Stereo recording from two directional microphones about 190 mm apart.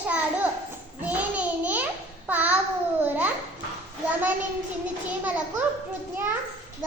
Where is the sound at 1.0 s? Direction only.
5° right (ahead or behind).